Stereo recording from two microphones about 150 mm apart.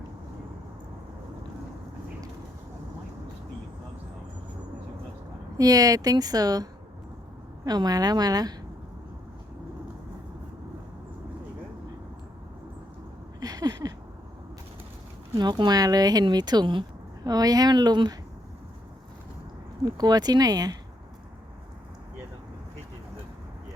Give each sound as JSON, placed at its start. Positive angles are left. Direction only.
{"t": 5.5, "sound": "speech", "side_deg": -25}
{"t": 13.4, "sound": "a sound", "side_deg": -25}
{"t": 15.4, "sound": "speech", "side_deg": -30}
{"t": 19.8, "sound": "speech", "side_deg": -25}